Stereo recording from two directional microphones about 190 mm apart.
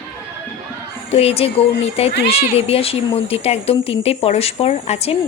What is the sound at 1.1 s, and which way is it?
Speech, 30° left (ahead or behind).